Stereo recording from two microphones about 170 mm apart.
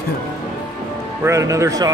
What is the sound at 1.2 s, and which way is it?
Speech, 20° right (ahead or behind).